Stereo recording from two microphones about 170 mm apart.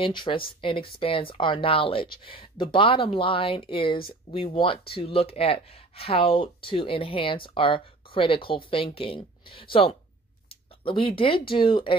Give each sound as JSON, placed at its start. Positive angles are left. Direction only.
{"t": 0.0, "sound": "speech", "side_deg": 30}